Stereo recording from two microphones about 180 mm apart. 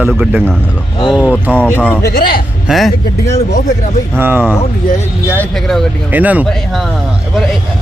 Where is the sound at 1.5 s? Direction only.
10° left (ahead or behind).